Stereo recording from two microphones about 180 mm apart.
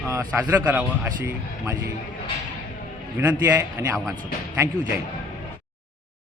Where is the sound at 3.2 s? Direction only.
10° right (ahead or behind).